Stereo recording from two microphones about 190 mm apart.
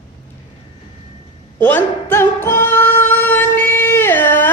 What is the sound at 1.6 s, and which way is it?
Singing, 10° left (ahead or behind).